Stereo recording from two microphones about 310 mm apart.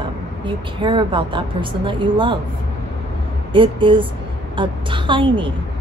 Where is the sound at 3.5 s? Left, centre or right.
Centre.